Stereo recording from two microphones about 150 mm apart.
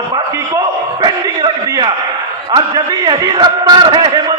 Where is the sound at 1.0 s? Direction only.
30° right (ahead or behind).